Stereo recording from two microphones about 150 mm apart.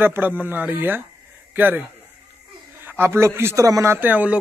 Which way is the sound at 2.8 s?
15° right (ahead or behind).